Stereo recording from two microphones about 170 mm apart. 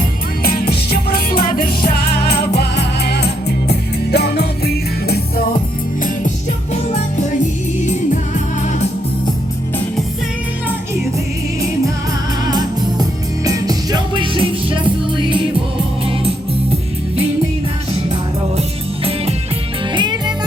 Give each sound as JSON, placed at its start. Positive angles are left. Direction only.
{"t": 0.4, "sound": "music", "side_deg": 65}
{"t": 12.5, "sound": "music", "side_deg": -25}
{"t": 19.9, "sound": "music", "side_deg": -25}